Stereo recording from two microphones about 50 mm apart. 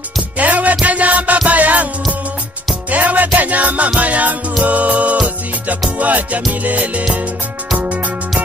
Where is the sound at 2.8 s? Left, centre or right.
Right.